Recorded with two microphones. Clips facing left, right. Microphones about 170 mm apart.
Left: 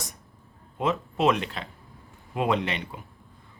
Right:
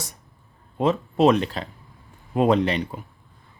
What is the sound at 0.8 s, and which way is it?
Speech, 35° right (ahead or behind).